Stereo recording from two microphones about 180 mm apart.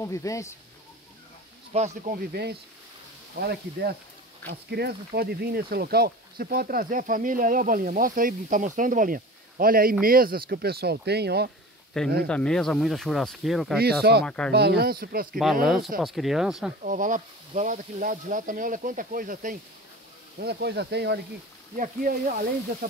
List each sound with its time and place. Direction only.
0.0 s speech: 15° left (ahead or behind)
1.7 s speech: 40° right (ahead or behind)
2.1 s speech: 60° right (ahead or behind)
11.9 s speech: 5° left (ahead or behind)
14.5 s speech: 65° right (ahead or behind)
15.6 s speech: centre (ahead or behind)
16.8 s speech: 45° right (ahead or behind)
20.3 s speech: 65° right (ahead or behind)
21.7 s speech: 50° right (ahead or behind)